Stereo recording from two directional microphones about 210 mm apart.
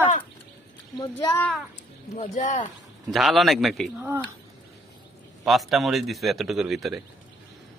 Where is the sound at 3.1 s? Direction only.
Centre (ahead or behind).